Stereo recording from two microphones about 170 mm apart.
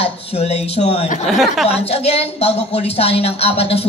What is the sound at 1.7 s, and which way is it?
A woman's voice, 35° left (ahead or behind).